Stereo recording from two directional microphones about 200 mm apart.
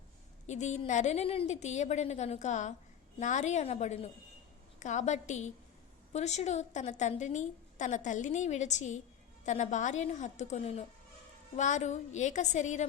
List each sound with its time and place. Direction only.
0.4 s a woman's voice: 35° left (ahead or behind)